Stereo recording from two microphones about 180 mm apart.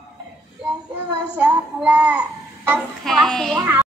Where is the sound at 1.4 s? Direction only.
5° right (ahead or behind).